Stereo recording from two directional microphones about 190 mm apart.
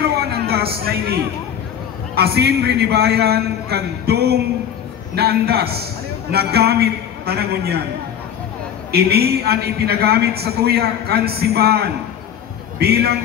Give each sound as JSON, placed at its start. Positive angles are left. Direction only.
{"t": 0.1, "sound": "a sound", "side_deg": -55}
{"t": 0.8, "sound": "a man's voice", "side_deg": -55}
{"t": 8.9, "sound": "a man's voice", "side_deg": -55}